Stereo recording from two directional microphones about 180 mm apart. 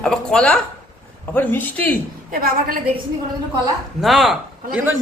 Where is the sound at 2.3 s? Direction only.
55° right (ahead or behind).